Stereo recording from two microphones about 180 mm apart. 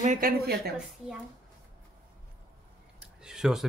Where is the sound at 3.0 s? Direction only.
5° right (ahead or behind).